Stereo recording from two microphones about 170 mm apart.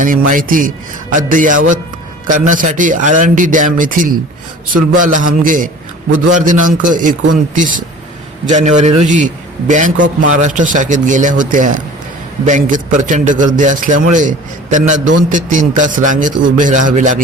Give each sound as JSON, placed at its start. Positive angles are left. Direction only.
{"t": 0.0, "sound": "a man's voice", "side_deg": -50}